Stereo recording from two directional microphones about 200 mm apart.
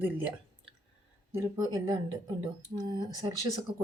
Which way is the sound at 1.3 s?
15° right (ahead or behind).